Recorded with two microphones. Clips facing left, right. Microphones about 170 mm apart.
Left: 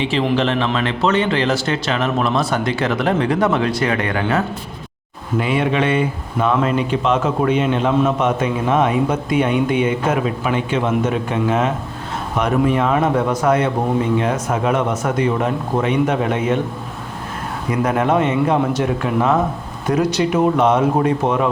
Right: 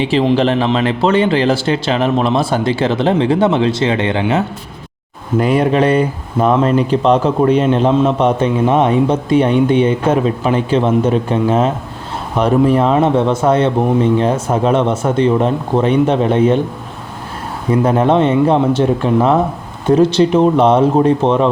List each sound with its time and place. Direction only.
0.0 s a man's voice: 35° right (ahead or behind)
5.4 s a man's voice: 40° right (ahead or behind)
17.7 s a man's voice: 30° right (ahead or behind)